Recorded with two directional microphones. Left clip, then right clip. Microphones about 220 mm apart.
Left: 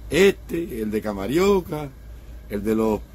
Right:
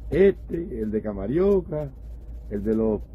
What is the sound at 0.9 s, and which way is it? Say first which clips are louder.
Speech: left 3 dB; 15° left (ahead or behind).